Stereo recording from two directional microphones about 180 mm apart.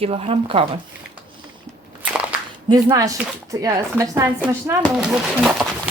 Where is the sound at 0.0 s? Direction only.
35° right (ahead or behind).